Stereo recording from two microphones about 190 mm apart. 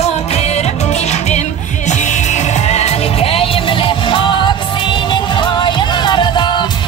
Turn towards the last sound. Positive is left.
turn(degrees=25)  # may be behind; listen again after turning